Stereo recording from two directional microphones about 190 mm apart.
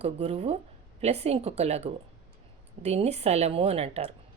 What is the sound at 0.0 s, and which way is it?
Speech, 30° right (ahead or behind).